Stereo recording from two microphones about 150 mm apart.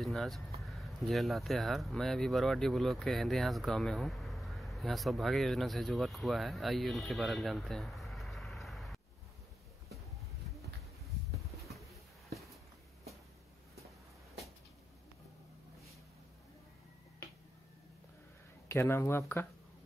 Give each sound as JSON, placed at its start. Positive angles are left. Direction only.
{"t": 0.0, "sound": "speech", "side_deg": 0}
{"t": 11.7, "sound": "a sound", "side_deg": 0}
{"t": 18.7, "sound": "speech", "side_deg": 15}